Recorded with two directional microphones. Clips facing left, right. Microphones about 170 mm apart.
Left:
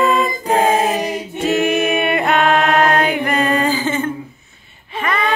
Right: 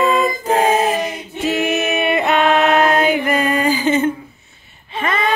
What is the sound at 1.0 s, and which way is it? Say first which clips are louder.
Female singing: left 1 dB; 45° left (ahead or behind).